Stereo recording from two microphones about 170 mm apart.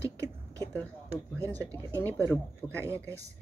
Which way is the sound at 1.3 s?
10° left (ahead or behind).